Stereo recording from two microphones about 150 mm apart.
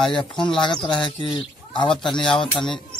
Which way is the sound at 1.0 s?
30° left (ahead or behind).